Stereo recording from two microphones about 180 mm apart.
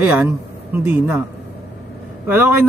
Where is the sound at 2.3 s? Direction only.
10° right (ahead or behind).